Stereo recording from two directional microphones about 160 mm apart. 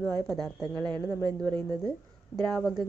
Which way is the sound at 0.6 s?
25° right (ahead or behind).